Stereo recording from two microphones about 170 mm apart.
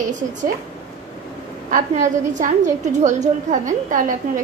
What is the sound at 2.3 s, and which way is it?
A woman's voice, 45° right (ahead or behind).